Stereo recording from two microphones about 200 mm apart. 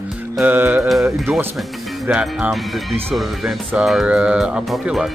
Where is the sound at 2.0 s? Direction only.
5° right (ahead or behind).